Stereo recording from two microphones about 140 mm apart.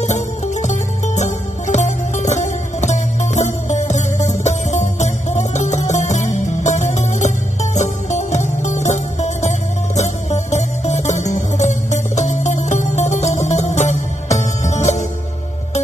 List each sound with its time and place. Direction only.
0.0 s music: 55° left (ahead or behind)